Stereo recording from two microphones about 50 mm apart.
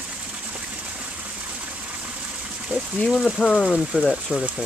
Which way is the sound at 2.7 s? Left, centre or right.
Right.